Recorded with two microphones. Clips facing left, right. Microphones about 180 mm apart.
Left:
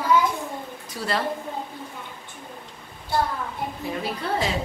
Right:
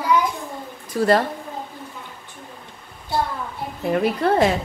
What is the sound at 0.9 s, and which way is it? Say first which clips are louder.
Speech: right 10 dB; 45° right (ahead or behind).